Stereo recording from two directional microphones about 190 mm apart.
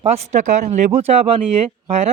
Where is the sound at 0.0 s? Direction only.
35° right (ahead or behind).